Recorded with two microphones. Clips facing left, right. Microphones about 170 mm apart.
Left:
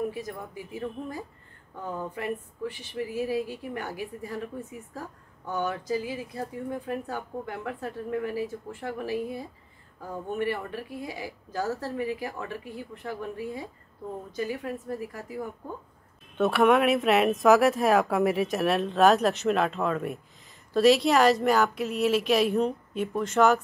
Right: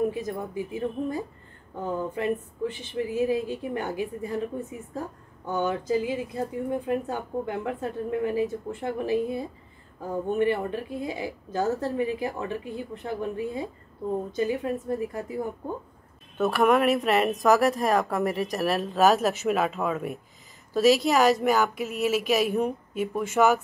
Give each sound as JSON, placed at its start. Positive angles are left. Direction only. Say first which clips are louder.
{"t": 0.1, "sound": "speech", "louder": "right 5 dB", "side_deg": -20}
{"t": 16.3, "sound": "speech", "louder": "even", "side_deg": 0}